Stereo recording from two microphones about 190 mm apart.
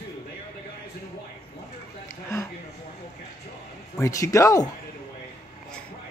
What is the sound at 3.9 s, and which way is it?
Speech, 15° left (ahead or behind).